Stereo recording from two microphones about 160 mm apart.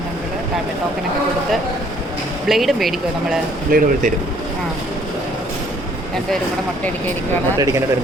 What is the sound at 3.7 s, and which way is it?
Speech, 60° right (ahead or behind).